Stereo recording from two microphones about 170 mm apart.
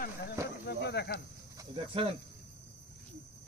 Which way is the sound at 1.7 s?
35° right (ahead or behind).